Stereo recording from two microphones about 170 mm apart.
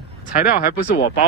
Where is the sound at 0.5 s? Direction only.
65° left (ahead or behind).